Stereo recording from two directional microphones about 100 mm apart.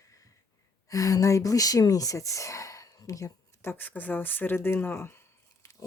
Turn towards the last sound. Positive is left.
turn(degrees=25)  # may be behind; listen again after turning